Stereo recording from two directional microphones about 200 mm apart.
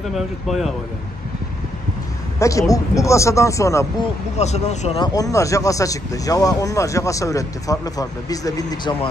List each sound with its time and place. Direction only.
0.1 s speech: centre (ahead or behind)
2.3 s speech: 15° left (ahead or behind)
4.4 s speech: 35° left (ahead or behind); by 8.9 s 20° left (ahead or behind)